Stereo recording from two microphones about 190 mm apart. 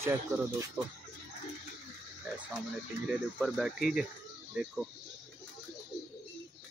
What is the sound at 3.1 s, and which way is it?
Speech, 5° right (ahead or behind).